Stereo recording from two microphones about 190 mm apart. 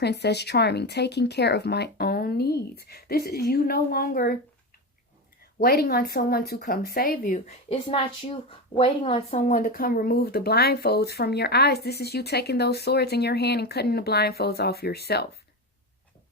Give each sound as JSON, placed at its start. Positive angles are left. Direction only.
{"t": 0.0, "sound": "speech", "side_deg": 60}
{"t": 5.6, "sound": "speech", "side_deg": 55}